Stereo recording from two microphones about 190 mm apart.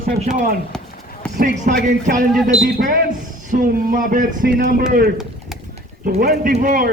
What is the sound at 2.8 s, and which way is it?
A man's voice, 50° right (ahead or behind).